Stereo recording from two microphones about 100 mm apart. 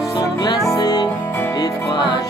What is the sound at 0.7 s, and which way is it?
Music, 45° left (ahead or behind).